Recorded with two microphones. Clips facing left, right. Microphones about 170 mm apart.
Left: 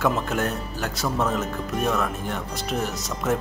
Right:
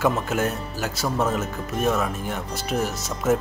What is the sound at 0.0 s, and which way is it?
Speech, centre (ahead or behind).